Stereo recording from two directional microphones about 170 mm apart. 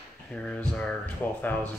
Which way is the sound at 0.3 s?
5° left (ahead or behind).